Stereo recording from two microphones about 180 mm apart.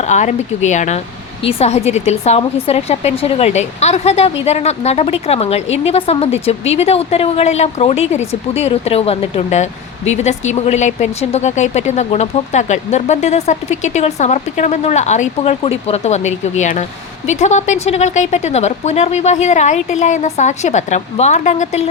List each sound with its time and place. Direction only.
0.1 s speech: 40° left (ahead or behind)